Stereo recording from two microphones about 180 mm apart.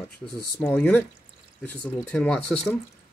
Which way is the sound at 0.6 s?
10° left (ahead or behind).